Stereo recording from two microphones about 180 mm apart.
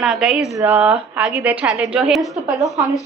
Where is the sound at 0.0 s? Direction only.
Centre (ahead or behind).